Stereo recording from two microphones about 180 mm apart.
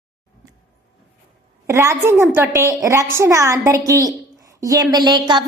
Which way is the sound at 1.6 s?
15° right (ahead or behind).